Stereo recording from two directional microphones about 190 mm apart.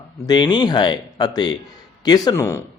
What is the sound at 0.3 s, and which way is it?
A man's voice, 25° left (ahead or behind).